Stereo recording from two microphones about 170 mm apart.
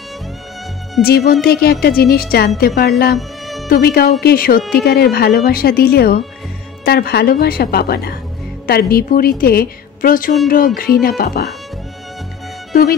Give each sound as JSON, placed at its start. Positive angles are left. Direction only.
{"t": 1.0, "sound": "a woman's voice", "side_deg": 65}
{"t": 3.2, "sound": "music", "side_deg": 0}
{"t": 3.6, "sound": "a woman's voice", "side_deg": 65}